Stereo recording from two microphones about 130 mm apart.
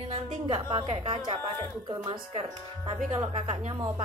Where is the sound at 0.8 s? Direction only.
35° right (ahead or behind).